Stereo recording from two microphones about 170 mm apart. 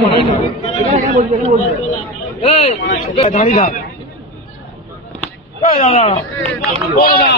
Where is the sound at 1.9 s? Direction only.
40° left (ahead or behind).